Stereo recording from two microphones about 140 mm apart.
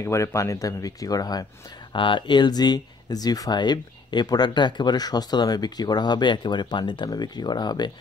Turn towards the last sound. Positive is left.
turn(degrees=30)  # may be behind; listen again after turning